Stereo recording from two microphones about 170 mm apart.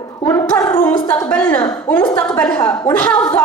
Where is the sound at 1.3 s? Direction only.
10° left (ahead or behind).